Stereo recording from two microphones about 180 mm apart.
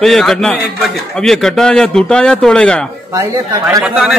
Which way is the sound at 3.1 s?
20° right (ahead or behind).